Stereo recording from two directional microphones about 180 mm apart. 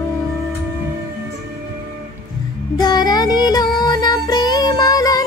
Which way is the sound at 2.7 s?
20° left (ahead or behind).